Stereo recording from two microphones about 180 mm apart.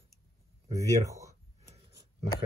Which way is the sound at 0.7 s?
15° right (ahead or behind).